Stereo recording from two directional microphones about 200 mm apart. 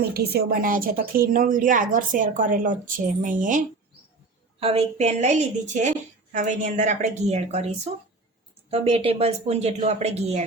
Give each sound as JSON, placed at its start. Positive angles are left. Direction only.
{"t": 0.1, "sound": "a woman's voice", "side_deg": -50}
{"t": 4.6, "sound": "speech", "side_deg": -30}
{"t": 8.7, "sound": "speech", "side_deg": -30}